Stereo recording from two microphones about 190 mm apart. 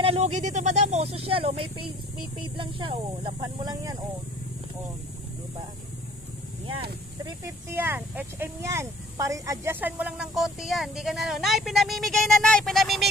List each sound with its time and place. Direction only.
0.0 s speech: 35° right (ahead or behind)
6.8 s speech: 25° right (ahead or behind)
7.7 s speech: 10° right (ahead or behind)